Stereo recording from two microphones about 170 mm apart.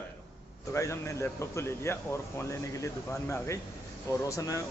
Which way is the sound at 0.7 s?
15° left (ahead or behind).